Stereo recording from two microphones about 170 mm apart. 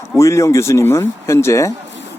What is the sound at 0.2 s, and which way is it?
Speech, 15° left (ahead or behind).